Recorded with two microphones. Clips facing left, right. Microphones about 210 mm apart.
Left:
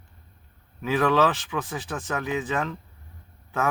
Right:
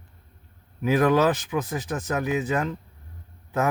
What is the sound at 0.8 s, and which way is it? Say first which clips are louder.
Speech: right 2 dB; 20° right (ahead or behind).